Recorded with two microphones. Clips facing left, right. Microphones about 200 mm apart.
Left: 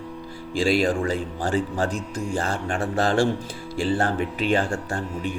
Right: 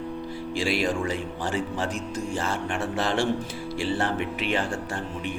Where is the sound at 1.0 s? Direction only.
35° left (ahead or behind).